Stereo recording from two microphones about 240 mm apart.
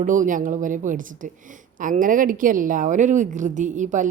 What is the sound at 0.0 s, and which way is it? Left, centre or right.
A woman's voice, right.